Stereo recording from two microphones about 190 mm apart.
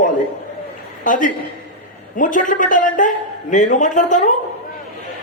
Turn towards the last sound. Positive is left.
turn(degrees=40)  # may be behind; listen again after turning